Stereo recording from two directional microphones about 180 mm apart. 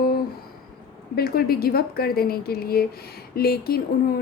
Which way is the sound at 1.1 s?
55° left (ahead or behind).